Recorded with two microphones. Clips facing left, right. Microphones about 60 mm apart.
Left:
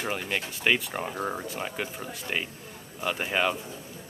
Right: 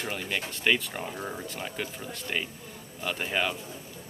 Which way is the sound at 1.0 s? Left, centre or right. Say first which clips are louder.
Left 4 dB; left.